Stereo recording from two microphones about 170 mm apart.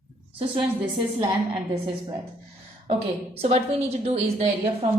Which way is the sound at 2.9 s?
35° right (ahead or behind).